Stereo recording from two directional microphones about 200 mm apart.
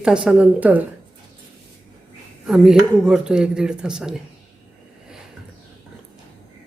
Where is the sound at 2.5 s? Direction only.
Centre (ahead or behind).